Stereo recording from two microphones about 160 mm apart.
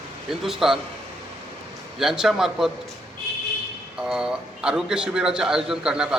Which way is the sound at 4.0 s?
5° right (ahead or behind).